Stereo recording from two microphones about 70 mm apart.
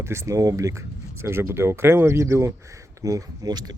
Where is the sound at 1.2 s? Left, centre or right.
Right.